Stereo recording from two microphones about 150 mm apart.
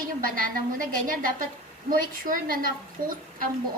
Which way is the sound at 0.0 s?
65° right (ahead or behind).